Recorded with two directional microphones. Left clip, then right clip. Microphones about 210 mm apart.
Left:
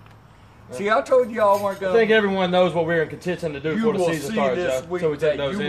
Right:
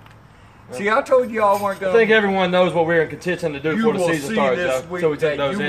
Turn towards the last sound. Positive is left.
turn(degrees=-20)  # may be behind; listen again after turning